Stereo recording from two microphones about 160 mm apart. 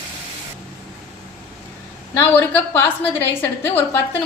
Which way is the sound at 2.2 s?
15° left (ahead or behind).